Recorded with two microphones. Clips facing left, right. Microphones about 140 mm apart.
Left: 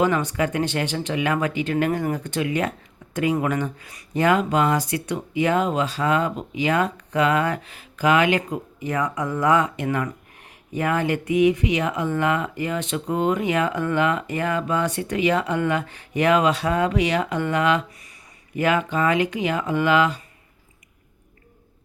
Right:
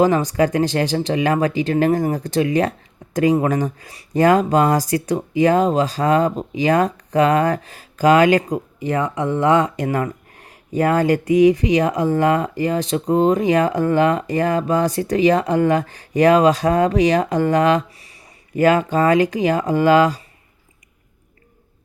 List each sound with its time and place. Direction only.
0.0 s speech: 35° right (ahead or behind)